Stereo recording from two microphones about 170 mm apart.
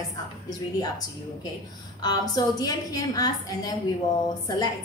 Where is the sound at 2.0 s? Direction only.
25° left (ahead or behind).